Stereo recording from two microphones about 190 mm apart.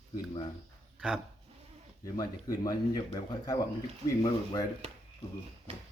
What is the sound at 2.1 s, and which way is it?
Speech, 20° left (ahead or behind).